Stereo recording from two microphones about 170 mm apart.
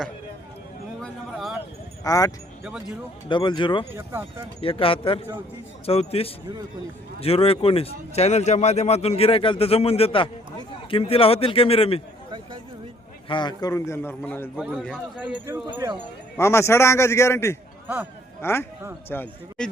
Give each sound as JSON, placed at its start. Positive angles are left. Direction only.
{"t": 1.0, "sound": "a sound", "side_deg": 0}
{"t": 2.0, "sound": "a man's voice", "side_deg": 20}
{"t": 13.2, "sound": "a man's voice", "side_deg": 25}
{"t": 14.5, "sound": "speech", "side_deg": 0}
{"t": 15.4, "sound": "speech", "side_deg": -15}
{"t": 16.4, "sound": "a man's voice", "side_deg": 15}
{"t": 17.8, "sound": "speech", "side_deg": -10}
{"t": 18.4, "sound": "a man's voice", "side_deg": 15}